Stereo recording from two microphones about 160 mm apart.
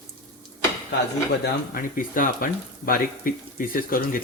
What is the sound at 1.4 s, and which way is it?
Speech, 60° left (ahead or behind).